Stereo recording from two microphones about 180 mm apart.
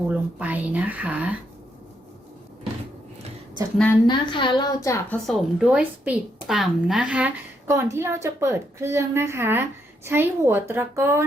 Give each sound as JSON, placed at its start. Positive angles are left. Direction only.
{"t": 0.1, "sound": "a woman's voice", "side_deg": -10}
{"t": 4.0, "sound": "a woman's voice", "side_deg": 25}
{"t": 5.2, "sound": "a woman's voice", "side_deg": 0}